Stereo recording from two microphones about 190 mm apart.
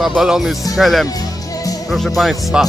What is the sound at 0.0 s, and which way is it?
Speech, 5° right (ahead or behind).